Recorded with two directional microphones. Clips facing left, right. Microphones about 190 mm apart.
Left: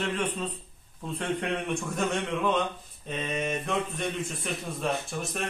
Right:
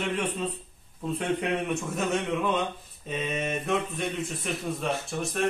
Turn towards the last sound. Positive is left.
turn(degrees=0)  # may be behind; listen again after turning